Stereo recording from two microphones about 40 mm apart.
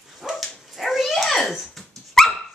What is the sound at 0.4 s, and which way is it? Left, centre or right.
Dog, centre.